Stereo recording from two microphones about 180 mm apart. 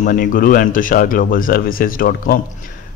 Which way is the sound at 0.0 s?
50° left (ahead or behind).